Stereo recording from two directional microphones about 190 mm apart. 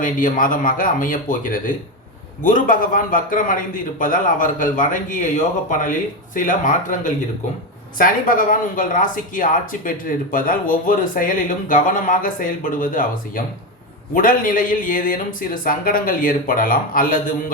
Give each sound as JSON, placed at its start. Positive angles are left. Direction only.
{"t": 0.0, "sound": "speech", "side_deg": 45}